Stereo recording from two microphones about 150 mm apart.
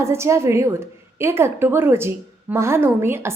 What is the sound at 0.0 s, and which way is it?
A woman's voice, 20° right (ahead or behind).